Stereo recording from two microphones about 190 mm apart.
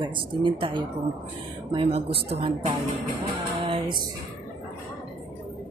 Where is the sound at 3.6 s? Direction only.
25° right (ahead or behind).